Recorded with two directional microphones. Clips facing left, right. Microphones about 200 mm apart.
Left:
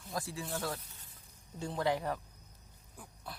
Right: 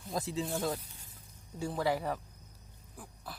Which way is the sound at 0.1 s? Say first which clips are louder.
Right 4 dB; 20° right (ahead or behind).